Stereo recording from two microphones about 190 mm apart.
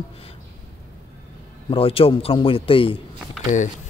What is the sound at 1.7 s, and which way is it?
A man's voice, 30° left (ahead or behind).